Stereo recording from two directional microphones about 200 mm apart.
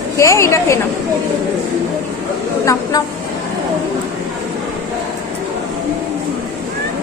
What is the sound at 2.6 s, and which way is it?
Speech, 15° left (ahead or behind).